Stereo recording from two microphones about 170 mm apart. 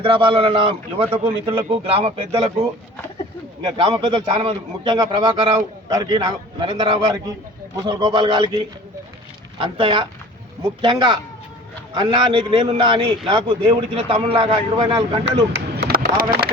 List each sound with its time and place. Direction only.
0.0 s a man's voice: 30° right (ahead or behind)
3.7 s a man's voice: 30° right (ahead or behind)
15.5 s a sound: 80° right